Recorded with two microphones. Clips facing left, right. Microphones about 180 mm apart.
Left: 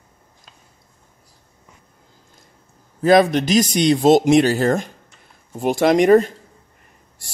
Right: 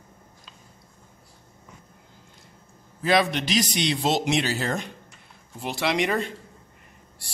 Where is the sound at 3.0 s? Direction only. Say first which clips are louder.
Left 9 dB; 45° left (ahead or behind).